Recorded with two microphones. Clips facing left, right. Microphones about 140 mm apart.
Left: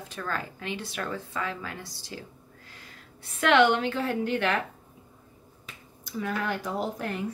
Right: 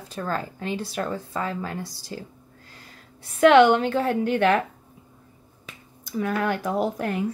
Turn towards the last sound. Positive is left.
turn(degrees=-55)  # may be behind; listen again after turning